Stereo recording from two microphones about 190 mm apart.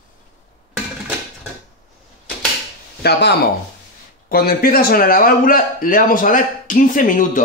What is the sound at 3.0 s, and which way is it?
Speech, 55° left (ahead or behind).